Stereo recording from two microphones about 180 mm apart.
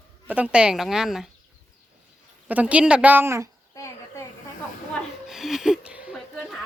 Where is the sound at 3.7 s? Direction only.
15° left (ahead or behind).